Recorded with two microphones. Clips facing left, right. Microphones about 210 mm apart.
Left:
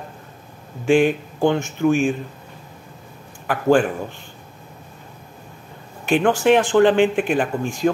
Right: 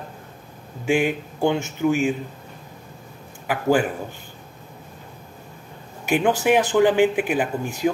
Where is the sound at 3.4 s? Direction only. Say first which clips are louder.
Left 3 dB; 10° right (ahead or behind).